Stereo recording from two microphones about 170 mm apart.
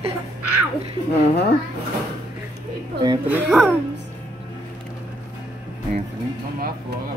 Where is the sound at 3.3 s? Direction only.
10° right (ahead or behind).